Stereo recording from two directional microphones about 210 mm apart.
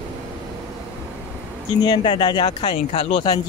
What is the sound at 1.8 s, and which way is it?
Speech, 20° left (ahead or behind).